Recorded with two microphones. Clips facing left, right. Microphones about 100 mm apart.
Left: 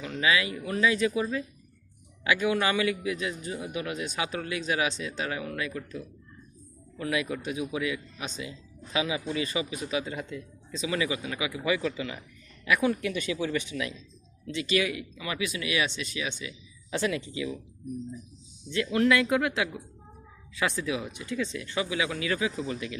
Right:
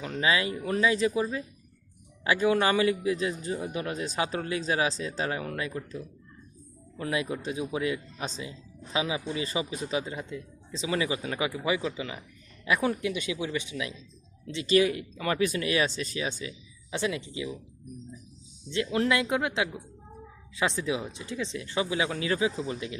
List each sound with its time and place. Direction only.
0.0 s speech: 35° right (ahead or behind)
11.7 s speech: 20° right (ahead or behind)
13.1 s speech: 15° right (ahead or behind)
14.4 s speech: 30° right (ahead or behind)
16.9 s speech: 20° right (ahead or behind)
18.7 s speech: 25° right (ahead or behind)